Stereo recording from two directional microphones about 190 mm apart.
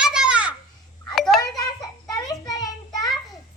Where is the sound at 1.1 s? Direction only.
Centre (ahead or behind).